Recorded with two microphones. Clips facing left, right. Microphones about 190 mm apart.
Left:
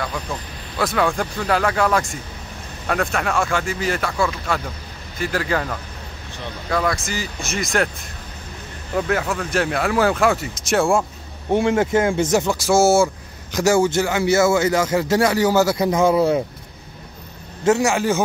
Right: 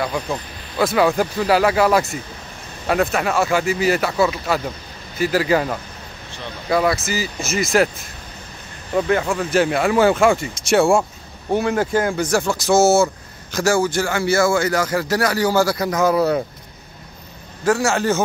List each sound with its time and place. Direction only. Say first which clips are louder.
0.7 s speech: right 4 dB; 5° right (ahead or behind)
8.9 s speech: right 3 dB; centre (ahead or behind)
11.5 s speech: left 1 dB; 25° left (ahead or behind)
17.6 s a man's voice: left 1 dB; 20° left (ahead or behind)